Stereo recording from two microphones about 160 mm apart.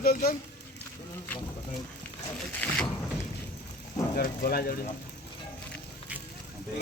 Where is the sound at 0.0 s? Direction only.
70° left (ahead or behind).